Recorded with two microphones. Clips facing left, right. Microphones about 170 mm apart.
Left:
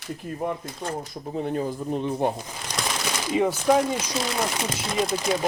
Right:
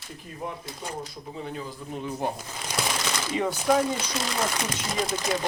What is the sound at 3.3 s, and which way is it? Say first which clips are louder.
Speech: left 3 dB; 10° left (ahead or behind).